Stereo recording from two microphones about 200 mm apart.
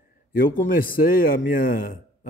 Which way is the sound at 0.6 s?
45° left (ahead or behind).